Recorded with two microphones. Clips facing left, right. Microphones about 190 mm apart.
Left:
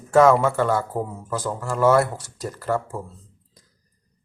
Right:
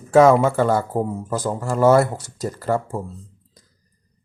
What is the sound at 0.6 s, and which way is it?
Speech, 40° right (ahead or behind).